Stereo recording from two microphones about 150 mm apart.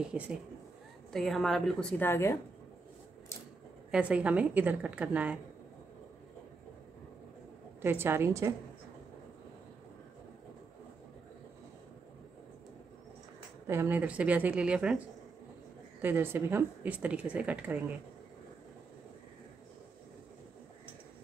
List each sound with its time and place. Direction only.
0.1 s a woman's voice: 5° right (ahead or behind); by 2.3 s 15° left (ahead or behind)
3.9 s a woman's voice: 10° right (ahead or behind)
7.8 s a woman's voice: 15° right (ahead or behind)
13.7 s a woman's voice: 15° right (ahead or behind)
16.0 s a woman's voice: 15° right (ahead or behind)